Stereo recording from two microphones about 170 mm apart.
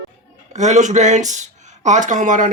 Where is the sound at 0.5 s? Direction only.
45° right (ahead or behind).